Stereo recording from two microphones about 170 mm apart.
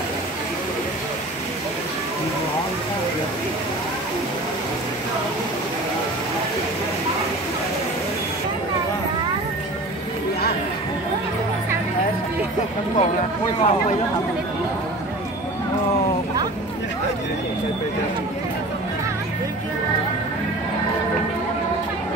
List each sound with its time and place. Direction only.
13.6 s speech: 45° left (ahead or behind)